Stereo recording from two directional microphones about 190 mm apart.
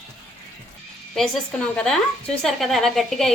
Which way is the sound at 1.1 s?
5° left (ahead or behind).